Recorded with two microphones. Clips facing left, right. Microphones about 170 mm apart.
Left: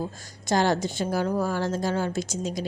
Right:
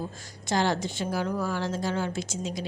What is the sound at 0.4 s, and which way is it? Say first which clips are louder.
A woman's voice: left 3 dB; 45° left (ahead or behind).